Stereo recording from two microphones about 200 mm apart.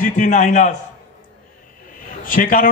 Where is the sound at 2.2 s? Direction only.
45° left (ahead or behind).